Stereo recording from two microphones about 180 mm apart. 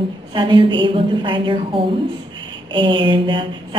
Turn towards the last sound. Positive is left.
turn(degrees=-25)  # may be behind; listen again after turning